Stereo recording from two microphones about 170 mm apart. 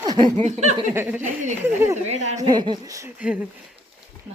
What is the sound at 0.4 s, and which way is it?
Speech, 45° right (ahead or behind).